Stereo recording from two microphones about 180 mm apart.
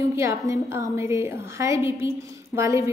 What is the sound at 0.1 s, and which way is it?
A woman's voice, 15° right (ahead or behind).